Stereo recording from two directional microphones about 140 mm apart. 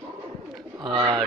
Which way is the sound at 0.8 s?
30° right (ahead or behind).